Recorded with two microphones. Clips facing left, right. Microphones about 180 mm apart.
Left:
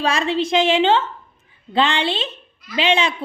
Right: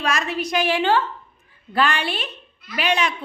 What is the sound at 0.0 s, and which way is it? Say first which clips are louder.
A woman's voice: left 4 dB; 30° left (ahead or behind).